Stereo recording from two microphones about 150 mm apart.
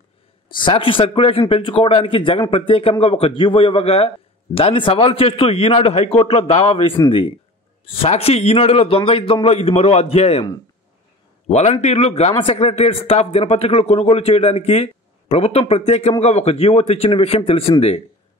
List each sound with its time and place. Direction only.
0.6 s a man's voice: 35° left (ahead or behind)
11.4 s a man's voice: 45° left (ahead or behind)